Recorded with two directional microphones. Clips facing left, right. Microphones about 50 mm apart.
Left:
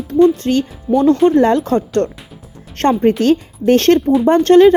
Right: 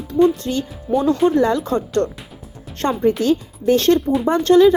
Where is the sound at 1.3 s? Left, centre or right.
Left.